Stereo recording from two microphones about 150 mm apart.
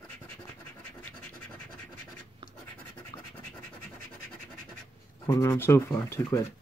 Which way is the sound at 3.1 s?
25° left (ahead or behind).